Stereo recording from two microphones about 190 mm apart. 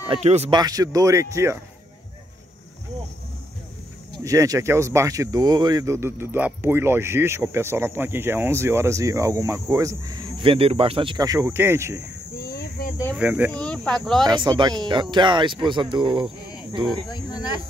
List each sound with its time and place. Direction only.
0.1 s speech: 35° right (ahead or behind)
0.5 s speech: 20° right (ahead or behind)
4.2 s speech: 15° right (ahead or behind)
12.4 s a sound: 55° left (ahead or behind)
13.1 s speech: 5° right (ahead or behind)
13.5 s speech: 5° left (ahead or behind)
14.2 s speech: 25° right (ahead or behind)
17.1 s speech: 20° left (ahead or behind)